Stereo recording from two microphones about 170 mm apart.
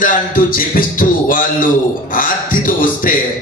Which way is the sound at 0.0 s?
55° left (ahead or behind).